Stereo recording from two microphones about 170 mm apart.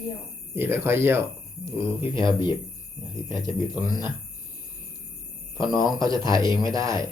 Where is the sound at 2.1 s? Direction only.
30° left (ahead or behind).